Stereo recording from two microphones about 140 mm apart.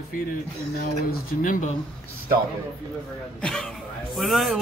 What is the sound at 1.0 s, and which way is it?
Speech, 75° left (ahead or behind).